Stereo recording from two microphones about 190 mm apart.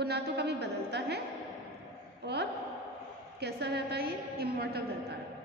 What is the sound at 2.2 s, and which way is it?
A woman's voice, 65° right (ahead or behind).